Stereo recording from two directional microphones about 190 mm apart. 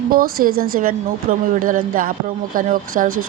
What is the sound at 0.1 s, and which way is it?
Speech, 50° right (ahead or behind).